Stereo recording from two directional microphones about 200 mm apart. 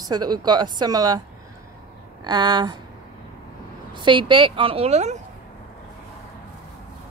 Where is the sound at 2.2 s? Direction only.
20° right (ahead or behind).